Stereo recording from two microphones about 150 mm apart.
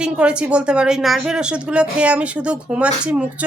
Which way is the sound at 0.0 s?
5° right (ahead or behind).